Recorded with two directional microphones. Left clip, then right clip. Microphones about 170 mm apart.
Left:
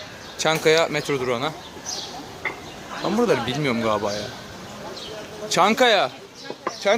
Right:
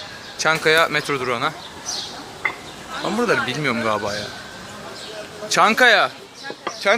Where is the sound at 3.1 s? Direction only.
20° left (ahead or behind).